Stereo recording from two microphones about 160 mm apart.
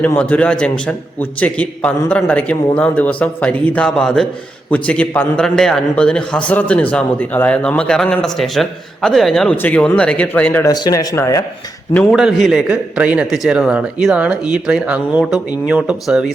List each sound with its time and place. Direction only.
0.0 s a man's voice: 10° left (ahead or behind)
10.7 s speech: 25° left (ahead or behind)
12.1 s a man's voice: centre (ahead or behind)